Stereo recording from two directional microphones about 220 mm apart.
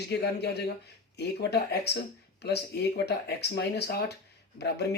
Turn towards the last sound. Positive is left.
turn(degrees=50)  # may be behind; listen again after turning